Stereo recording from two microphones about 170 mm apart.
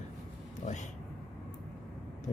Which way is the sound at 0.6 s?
45° left (ahead or behind).